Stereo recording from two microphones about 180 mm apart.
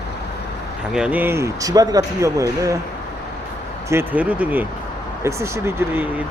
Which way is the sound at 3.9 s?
10° right (ahead or behind).